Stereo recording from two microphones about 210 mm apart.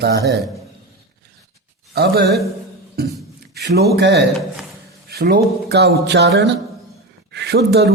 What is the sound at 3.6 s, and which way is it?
A man's voice, 50° right (ahead or behind).